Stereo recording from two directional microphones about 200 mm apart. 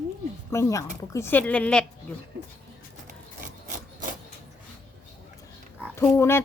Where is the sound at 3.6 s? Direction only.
40° right (ahead or behind).